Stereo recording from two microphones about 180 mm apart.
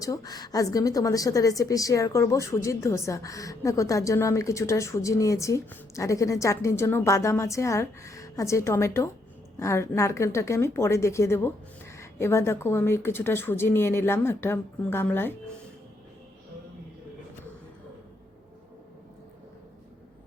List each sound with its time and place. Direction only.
0.0 s a woman's voice: 20° left (ahead or behind)